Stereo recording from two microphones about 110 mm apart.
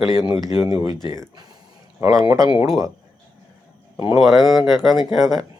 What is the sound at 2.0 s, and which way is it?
Speech, 30° right (ahead or behind).